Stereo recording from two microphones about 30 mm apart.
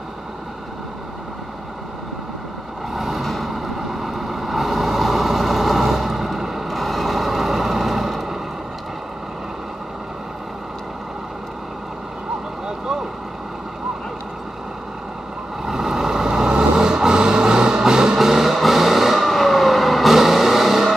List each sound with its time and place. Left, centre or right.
2.9 s vehicle: centre
15.6 s vehicle: centre
18.1 s music: centre
19.2 s vehicle: centre